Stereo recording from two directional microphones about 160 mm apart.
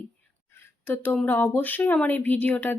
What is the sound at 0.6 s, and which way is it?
Speech, 10° left (ahead or behind).